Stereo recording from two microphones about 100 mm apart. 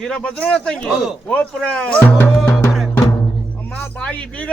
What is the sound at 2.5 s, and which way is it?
Music, 25° left (ahead or behind).